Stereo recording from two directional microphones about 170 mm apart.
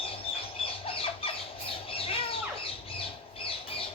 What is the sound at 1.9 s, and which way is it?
Squawk, 35° left (ahead or behind).